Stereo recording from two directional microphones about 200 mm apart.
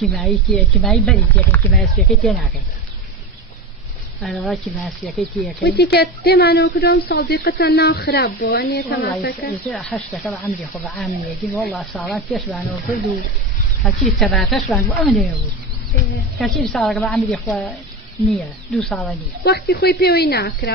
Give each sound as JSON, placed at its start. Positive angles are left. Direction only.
{"t": 0.0, "sound": "speech", "side_deg": 0}
{"t": 4.2, "sound": "speech", "side_deg": 0}
{"t": 5.6, "sound": "speech", "side_deg": 50}
{"t": 9.6, "sound": "speech", "side_deg": 0}
{"t": 14.1, "sound": "speech", "side_deg": 5}
{"t": 16.3, "sound": "speech", "side_deg": 0}
{"t": 19.4, "sound": "speech", "side_deg": 55}